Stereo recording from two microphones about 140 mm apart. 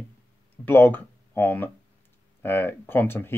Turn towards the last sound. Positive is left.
turn(degrees=15)  # may be behind; listen again after turning